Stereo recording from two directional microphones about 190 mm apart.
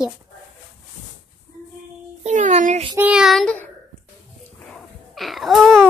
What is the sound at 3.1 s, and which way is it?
Speech, centre (ahead or behind).